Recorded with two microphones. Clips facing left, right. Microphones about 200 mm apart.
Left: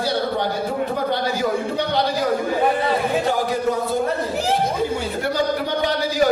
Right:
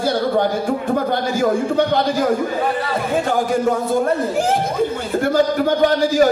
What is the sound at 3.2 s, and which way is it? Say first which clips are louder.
A man's voice: right 3 dB; 50° right (ahead or behind).